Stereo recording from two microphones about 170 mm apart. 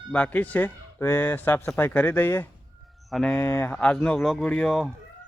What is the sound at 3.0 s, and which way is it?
Speech, centre (ahead or behind).